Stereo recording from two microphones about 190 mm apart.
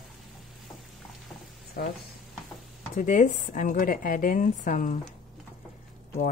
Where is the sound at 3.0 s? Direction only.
40° left (ahead or behind).